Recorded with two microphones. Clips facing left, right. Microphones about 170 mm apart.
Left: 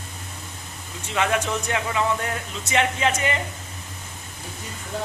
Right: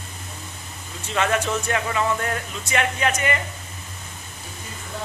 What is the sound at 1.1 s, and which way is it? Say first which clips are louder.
Speech: right 1 dB; 15° left (ahead or behind).